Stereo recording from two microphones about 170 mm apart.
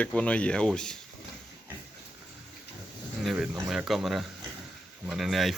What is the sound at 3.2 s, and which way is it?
Speech, centre (ahead or behind).